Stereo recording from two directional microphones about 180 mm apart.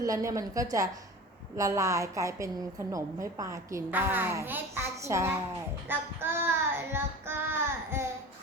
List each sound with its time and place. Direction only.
0.0 s a woman's voice: 15° right (ahead or behind)
5.9 s child singing: 10° right (ahead or behind)
7.9 s a sound: 15° right (ahead or behind)